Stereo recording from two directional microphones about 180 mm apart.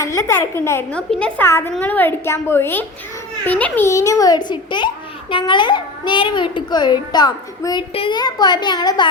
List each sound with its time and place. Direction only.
0.0 s a child's voice: 15° left (ahead or behind)